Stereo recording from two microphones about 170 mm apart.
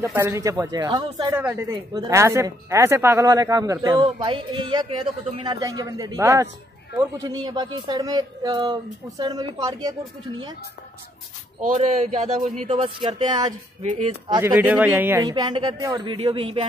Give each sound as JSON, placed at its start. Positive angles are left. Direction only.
{"t": 0.1, "sound": "speech", "side_deg": -15}
{"t": 1.5, "sound": "speech", "side_deg": -15}
{"t": 11.6, "sound": "speech", "side_deg": -45}
{"t": 14.4, "sound": "speech", "side_deg": -10}
{"t": 15.2, "sound": "speech", "side_deg": -25}